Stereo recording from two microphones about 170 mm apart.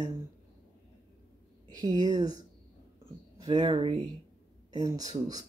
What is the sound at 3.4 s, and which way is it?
Speech, 25° right (ahead or behind).